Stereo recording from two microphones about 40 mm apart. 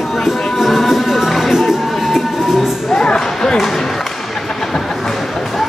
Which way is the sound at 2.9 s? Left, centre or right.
Left.